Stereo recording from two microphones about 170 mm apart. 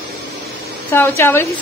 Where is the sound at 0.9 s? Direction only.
10° left (ahead or behind).